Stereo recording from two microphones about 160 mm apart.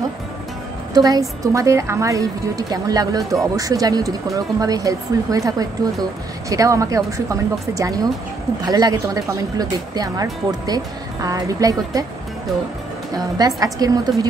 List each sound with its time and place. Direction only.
0.9 s speech: 25° right (ahead or behind)
13.1 s speech: 25° right (ahead or behind)